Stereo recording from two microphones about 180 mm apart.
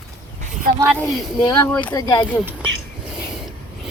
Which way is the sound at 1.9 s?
20° left (ahead or behind).